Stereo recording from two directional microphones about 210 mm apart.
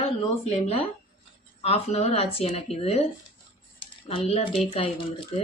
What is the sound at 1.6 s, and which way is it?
Speech, 30° left (ahead or behind).